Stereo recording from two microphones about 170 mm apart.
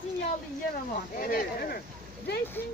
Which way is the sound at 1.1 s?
55° left (ahead or behind).